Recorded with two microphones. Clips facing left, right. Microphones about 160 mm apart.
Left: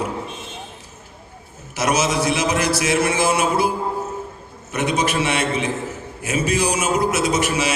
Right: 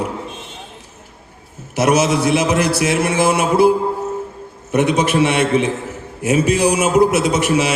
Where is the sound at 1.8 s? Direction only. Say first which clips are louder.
Right 5 dB; 60° right (ahead or behind).